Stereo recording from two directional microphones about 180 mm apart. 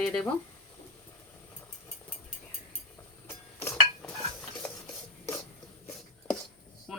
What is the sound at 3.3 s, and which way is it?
Dishes, 10° left (ahead or behind).